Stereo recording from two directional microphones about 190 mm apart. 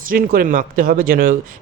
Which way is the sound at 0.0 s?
50° right (ahead or behind).